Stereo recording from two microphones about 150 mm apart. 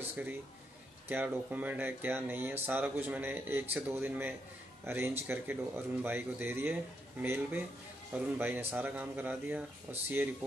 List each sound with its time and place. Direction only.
0.1 s speech: 15° right (ahead or behind)